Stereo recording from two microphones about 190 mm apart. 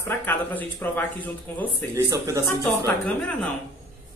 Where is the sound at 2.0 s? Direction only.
15° right (ahead or behind).